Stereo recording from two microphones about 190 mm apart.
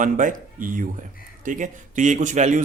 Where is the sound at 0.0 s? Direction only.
45° right (ahead or behind).